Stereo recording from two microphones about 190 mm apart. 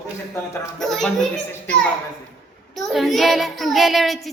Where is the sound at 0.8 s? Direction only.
Centre (ahead or behind).